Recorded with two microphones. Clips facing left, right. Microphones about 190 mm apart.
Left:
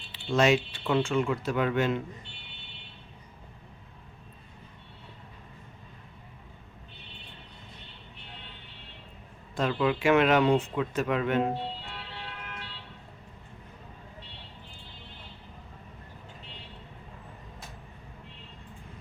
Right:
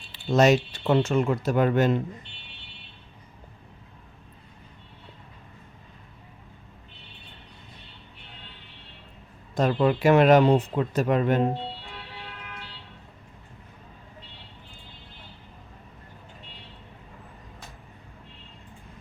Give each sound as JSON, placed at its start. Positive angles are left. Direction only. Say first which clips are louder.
{"t": 0.3, "sound": "speech", "louder": "right 4 dB", "side_deg": -40}
{"t": 9.6, "sound": "speech", "louder": "right 5 dB", "side_deg": -40}